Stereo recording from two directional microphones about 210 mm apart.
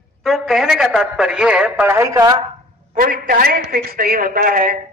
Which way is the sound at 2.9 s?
40° right (ahead or behind).